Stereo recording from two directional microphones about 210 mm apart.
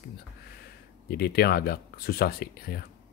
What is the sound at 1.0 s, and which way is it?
Speech, 50° left (ahead or behind).